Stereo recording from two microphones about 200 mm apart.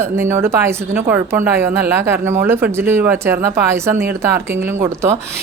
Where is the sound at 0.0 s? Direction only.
10° right (ahead or behind).